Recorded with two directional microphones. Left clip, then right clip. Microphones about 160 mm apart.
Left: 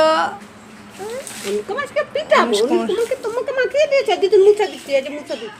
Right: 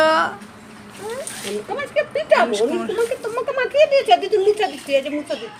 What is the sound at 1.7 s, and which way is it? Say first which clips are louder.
Speech: right 2 dB; 25° left (ahead or behind).